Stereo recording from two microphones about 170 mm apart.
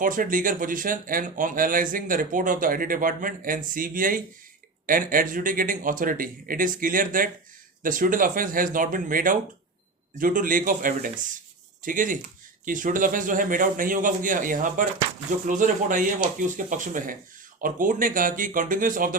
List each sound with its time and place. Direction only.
0.0 s speech: 55° right (ahead or behind)